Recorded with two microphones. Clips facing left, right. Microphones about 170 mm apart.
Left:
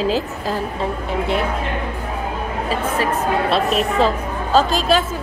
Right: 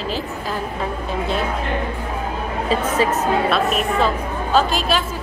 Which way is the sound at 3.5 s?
35° left (ahead or behind).